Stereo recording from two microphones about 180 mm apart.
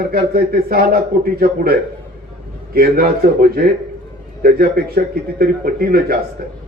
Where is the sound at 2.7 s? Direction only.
60° right (ahead or behind).